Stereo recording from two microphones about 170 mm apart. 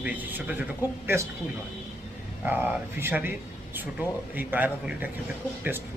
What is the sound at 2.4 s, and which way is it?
Speech, 10° right (ahead or behind).